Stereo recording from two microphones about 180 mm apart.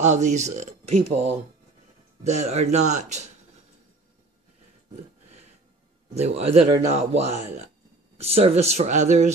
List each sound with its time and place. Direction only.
0.0 s speech: 40° right (ahead or behind)
6.1 s speech: 35° right (ahead or behind)